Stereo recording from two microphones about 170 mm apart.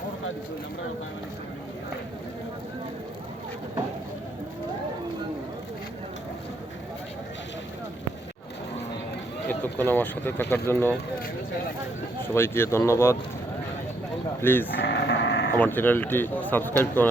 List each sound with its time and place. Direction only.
9.5 s a man's voice: 10° left (ahead or behind)
12.3 s a man's voice: 15° left (ahead or behind)
14.4 s a man's voice: 10° left (ahead or behind)
14.8 s sheep: 90° left
15.5 s a man's voice: 10° left (ahead or behind)